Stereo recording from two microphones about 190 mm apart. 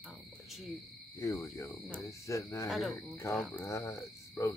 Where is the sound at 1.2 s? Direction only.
15° left (ahead or behind).